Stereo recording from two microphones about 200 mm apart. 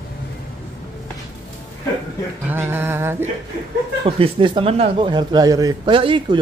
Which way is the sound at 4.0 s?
25° right (ahead or behind).